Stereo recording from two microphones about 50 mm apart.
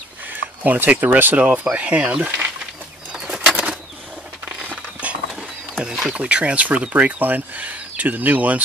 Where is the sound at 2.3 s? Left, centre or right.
Right.